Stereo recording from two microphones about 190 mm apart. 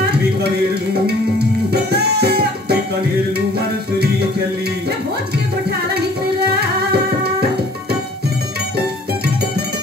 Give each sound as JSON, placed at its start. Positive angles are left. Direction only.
{"t": 1.7, "sound": "music", "side_deg": -60}